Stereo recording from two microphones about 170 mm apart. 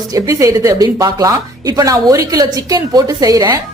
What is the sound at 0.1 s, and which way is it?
A woman's voice, 20° right (ahead or behind).